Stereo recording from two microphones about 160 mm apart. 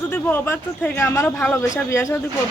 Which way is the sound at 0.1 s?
15° left (ahead or behind).